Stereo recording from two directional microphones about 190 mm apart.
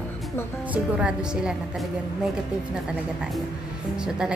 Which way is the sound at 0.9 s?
5° right (ahead or behind).